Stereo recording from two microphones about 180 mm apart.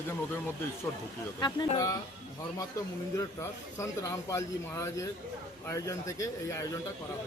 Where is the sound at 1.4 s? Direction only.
25° left (ahead or behind).